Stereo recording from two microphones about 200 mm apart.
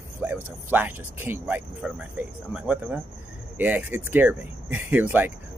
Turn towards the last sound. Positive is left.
turn(degrees=-10)  # may be behind; listen again after turning